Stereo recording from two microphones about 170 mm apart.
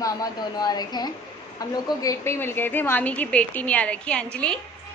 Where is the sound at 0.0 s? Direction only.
20° left (ahead or behind).